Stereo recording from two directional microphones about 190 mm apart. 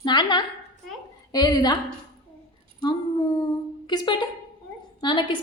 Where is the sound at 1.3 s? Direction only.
20° left (ahead or behind).